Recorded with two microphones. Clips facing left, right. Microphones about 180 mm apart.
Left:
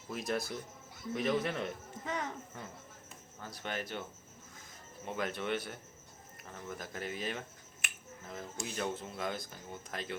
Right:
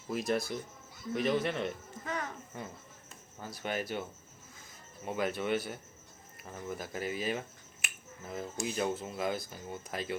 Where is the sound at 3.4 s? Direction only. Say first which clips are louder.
Right 4 dB; 10° right (ahead or behind).